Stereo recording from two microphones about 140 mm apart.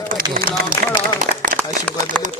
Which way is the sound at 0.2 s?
90° right.